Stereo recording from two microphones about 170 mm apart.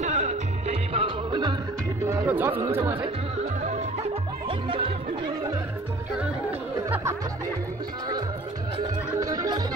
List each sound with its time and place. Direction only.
0.0 s music: 45° right (ahead or behind)
2.0 s music: 15° right (ahead or behind)
4.5 s music: 30° right (ahead or behind)
9.2 s music: 20° right (ahead or behind)